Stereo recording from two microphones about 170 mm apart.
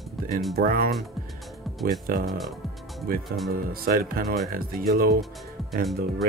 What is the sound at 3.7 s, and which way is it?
Speech, 60° right (ahead or behind).